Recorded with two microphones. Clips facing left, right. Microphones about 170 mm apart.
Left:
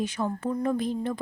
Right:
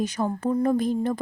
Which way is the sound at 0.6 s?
40° right (ahead or behind).